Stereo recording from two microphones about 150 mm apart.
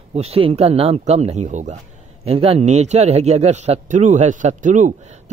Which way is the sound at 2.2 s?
40° right (ahead or behind).